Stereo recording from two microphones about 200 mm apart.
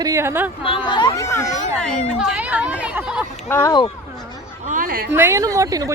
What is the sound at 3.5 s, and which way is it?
Speech, 15° left (ahead or behind).